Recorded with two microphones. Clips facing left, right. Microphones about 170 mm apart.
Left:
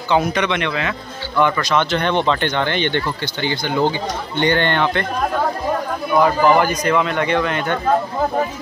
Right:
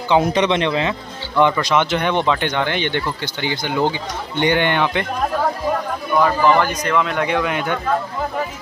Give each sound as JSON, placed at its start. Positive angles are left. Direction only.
{"t": 0.1, "sound": "speech", "side_deg": -25}
{"t": 1.4, "sound": "speech", "side_deg": -15}
{"t": 6.2, "sound": "a man's voice", "side_deg": 5}